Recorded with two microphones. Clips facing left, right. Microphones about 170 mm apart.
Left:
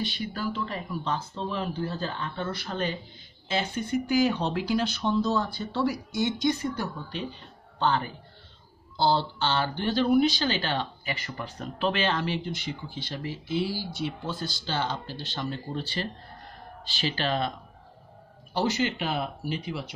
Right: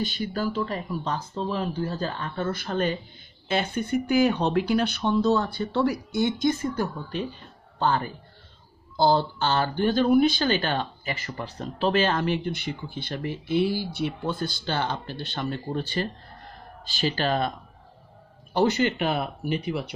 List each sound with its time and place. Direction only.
0.0 s a man's voice: 45° right (ahead or behind)
18.5 s speech: 55° right (ahead or behind)